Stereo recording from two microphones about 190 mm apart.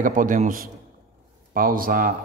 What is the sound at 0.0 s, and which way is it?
A man's voice, 45° right (ahead or behind).